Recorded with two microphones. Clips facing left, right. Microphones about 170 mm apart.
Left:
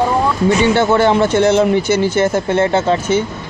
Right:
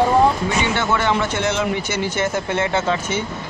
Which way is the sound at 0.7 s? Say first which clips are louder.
Left 8 dB; 35° left (ahead or behind).